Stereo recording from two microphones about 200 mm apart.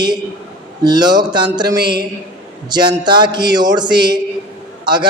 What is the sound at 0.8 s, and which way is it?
A man's voice, 20° right (ahead or behind).